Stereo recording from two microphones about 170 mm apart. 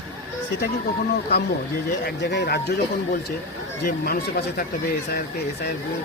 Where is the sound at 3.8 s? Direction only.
60° left (ahead or behind).